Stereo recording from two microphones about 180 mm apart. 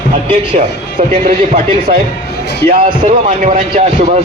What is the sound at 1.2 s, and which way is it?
Speech, 45° right (ahead or behind).